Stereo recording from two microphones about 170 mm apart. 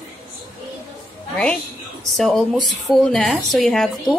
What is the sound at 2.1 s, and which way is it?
A woman's voice, centre (ahead or behind).